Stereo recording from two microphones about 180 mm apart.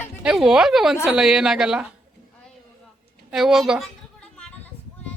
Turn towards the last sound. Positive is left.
turn(degrees=5)  # may be behind; listen again after turning